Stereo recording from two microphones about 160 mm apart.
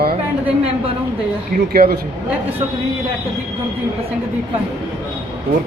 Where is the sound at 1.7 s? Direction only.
70° right (ahead or behind).